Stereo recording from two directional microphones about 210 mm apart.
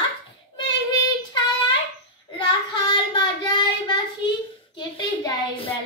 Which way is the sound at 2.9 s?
20° left (ahead or behind).